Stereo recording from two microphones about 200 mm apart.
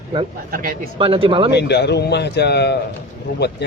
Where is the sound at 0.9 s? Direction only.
25° right (ahead or behind).